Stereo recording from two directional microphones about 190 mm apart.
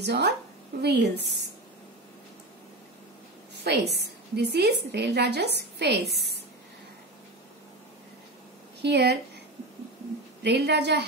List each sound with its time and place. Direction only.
0.0 s a woman's voice: 60° right (ahead or behind)
3.5 s a woman's voice: 60° right (ahead or behind)
8.8 s a woman's voice: 60° right (ahead or behind)
10.4 s a woman's voice: 60° right (ahead or behind)